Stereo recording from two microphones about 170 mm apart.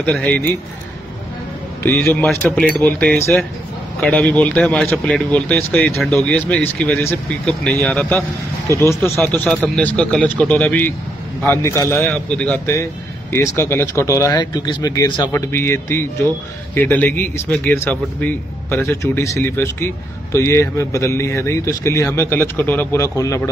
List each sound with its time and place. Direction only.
0.0 s speech: 10° left (ahead or behind)
1.8 s speech: 15° left (ahead or behind)